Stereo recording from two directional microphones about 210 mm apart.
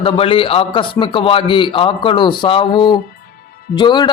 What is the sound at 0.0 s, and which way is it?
A man's voice, 25° left (ahead or behind).